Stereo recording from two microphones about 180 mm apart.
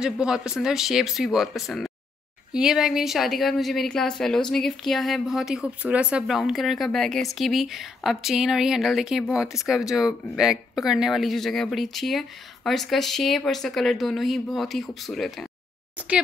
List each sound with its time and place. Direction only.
0.0 s speech: 5° right (ahead or behind)